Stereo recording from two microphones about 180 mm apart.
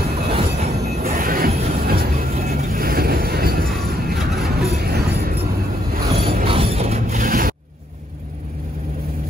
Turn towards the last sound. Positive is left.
turn(degrees=-50)  # may be behind; listen again after turning